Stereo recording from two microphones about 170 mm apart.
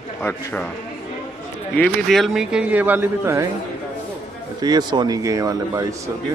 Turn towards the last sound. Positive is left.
turn(degrees=-20)  # may be behind; listen again after turning